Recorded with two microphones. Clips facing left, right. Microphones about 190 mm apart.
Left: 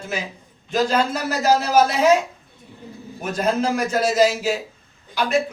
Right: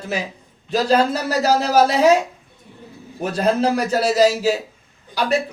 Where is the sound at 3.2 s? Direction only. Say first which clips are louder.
Right 3 dB; 35° right (ahead or behind).